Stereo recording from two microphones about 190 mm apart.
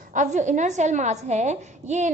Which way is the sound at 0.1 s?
40° right (ahead or behind).